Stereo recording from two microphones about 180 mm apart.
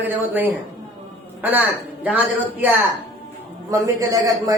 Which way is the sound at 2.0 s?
10° right (ahead or behind).